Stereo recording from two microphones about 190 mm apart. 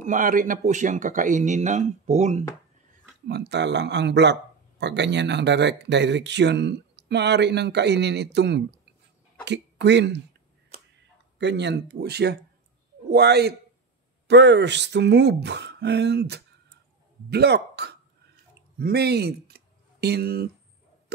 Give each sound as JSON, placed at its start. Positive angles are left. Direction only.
{"t": 0.0, "sound": "speech", "side_deg": -45}
{"t": 3.3, "sound": "speech", "side_deg": -60}
{"t": 11.3, "sound": "speech", "side_deg": -65}